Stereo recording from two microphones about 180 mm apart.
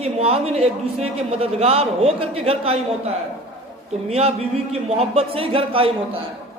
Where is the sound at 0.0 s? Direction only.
35° right (ahead or behind).